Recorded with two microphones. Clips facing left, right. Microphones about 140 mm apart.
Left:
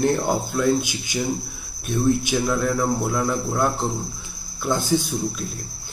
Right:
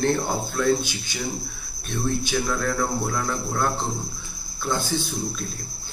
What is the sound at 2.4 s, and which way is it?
A man's voice, 15° left (ahead or behind).